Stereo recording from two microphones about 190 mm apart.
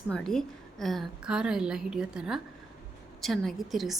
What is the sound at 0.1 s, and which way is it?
A woman's voice, 5° left (ahead or behind).